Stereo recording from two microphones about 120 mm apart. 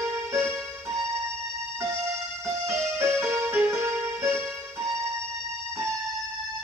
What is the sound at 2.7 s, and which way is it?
Music, 20° right (ahead or behind).